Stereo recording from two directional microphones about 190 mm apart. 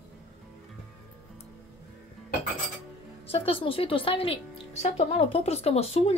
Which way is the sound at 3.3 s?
30° left (ahead or behind).